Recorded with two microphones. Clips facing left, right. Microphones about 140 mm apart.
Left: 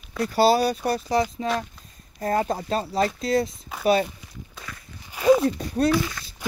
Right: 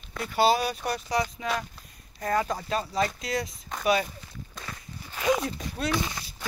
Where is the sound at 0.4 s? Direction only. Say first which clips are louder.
Left 4 dB; 35° left (ahead or behind).